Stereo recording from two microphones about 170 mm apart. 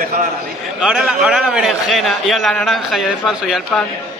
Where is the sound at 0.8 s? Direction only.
5° right (ahead or behind).